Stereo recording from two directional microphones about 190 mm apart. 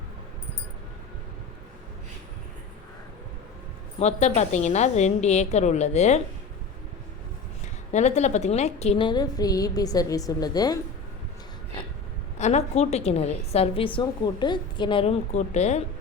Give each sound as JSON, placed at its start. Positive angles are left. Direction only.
{"t": 4.0, "sound": "a woman's voice", "side_deg": 30}
{"t": 7.6, "sound": "a woman's voice", "side_deg": 35}
{"t": 12.4, "sound": "a woman's voice", "side_deg": 35}